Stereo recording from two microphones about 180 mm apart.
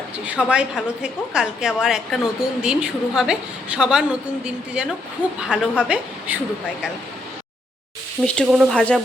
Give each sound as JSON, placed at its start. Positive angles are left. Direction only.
{"t": 0.3, "sound": "a woman's voice", "side_deg": -5}
{"t": 8.2, "sound": "a woman's voice", "side_deg": 0}